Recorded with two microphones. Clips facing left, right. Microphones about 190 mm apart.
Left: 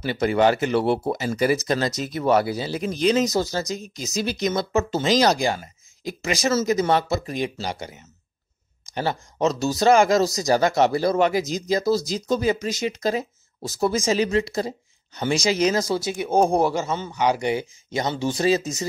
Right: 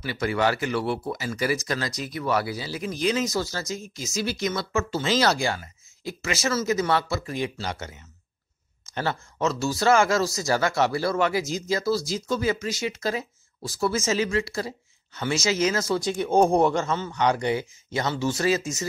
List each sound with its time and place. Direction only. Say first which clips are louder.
0.0 s speech: left 5 dB; 25° left (ahead or behind)